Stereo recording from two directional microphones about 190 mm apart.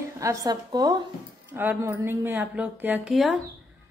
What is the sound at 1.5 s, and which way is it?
A woman's voice, 10° right (ahead or behind).